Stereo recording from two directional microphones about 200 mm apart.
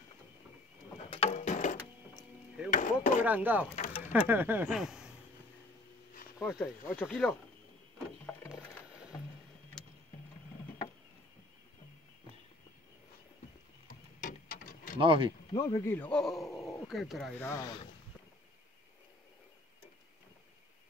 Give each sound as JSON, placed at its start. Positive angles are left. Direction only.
{"t": 1.1, "sound": "a sound", "side_deg": 35}
{"t": 3.3, "sound": "speech", "side_deg": -10}
{"t": 3.7, "sound": "a sound", "side_deg": 30}
{"t": 4.1, "sound": "speech", "side_deg": -10}
{"t": 6.3, "sound": "speech", "side_deg": 15}
{"t": 8.3, "sound": "music", "side_deg": 10}
{"t": 14.2, "sound": "a sound", "side_deg": 40}
{"t": 15.0, "sound": "speech", "side_deg": -25}
{"t": 15.5, "sound": "speech", "side_deg": 15}
{"t": 16.4, "sound": "dog", "side_deg": 15}
{"t": 16.8, "sound": "speech", "side_deg": 0}
{"t": 17.4, "sound": "speech", "side_deg": 15}